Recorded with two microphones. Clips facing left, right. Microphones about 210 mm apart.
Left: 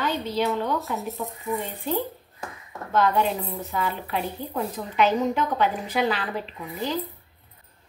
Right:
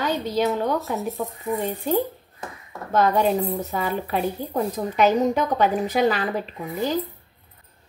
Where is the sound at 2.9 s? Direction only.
40° right (ahead or behind).